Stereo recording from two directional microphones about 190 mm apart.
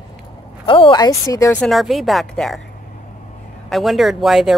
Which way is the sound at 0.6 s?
25° left (ahead or behind).